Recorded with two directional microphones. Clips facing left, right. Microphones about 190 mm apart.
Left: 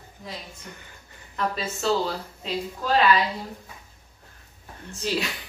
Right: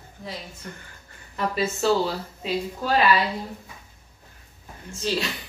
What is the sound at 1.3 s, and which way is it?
Speech, 5° right (ahead or behind).